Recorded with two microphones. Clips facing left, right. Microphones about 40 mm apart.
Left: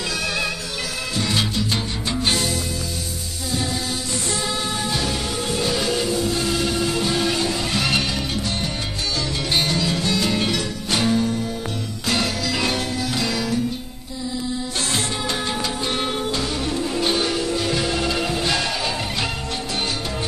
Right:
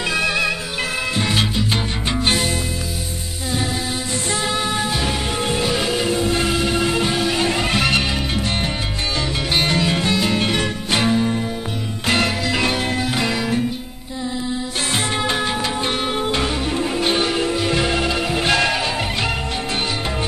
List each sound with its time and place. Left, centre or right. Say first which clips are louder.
0.0 s music: right 5 dB; right
1.3 s salsa music: right 2 dB; right
2.2 s music: right 2 dB; right
4.4 s music: right 4 dB; right
5.7 s music: right 2 dB; right
6.0 s music: right 3 dB; right
6.5 s music: right 3 dB; right
9.7 s music: right 3 dB; right
10.1 s music: right 2 dB; right
15.2 s music: right 4 dB; right
16.3 s music: right 3 dB; right
16.9 s music: right 2 dB; right
18.0 s music: right 2 dB; centre
18.3 s music: right 5 dB; right